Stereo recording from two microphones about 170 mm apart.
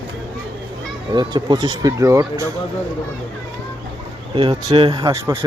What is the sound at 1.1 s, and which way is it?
Speech, 25° right (ahead or behind).